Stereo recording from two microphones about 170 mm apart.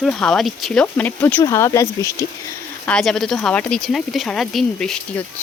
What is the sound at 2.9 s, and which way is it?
Speech, 5° left (ahead or behind).